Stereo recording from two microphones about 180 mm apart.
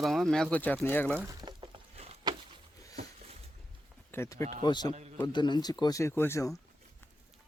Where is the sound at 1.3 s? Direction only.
20° right (ahead or behind).